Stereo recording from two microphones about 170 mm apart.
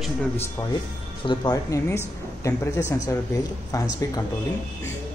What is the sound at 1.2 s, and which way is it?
Speech, 25° left (ahead or behind).